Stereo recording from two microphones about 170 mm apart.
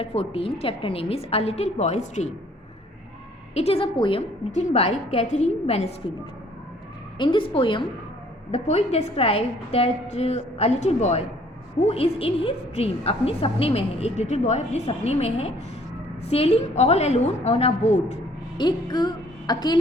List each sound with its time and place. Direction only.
0.0 s a woman's voice: 35° left (ahead or behind)
3.5 s a woman's voice: 35° left (ahead or behind)
7.2 s a woman's voice: 30° left (ahead or behind)
8.5 s a woman's voice: 40° left (ahead or behind)
18.5 s a woman's voice: 25° left (ahead or behind)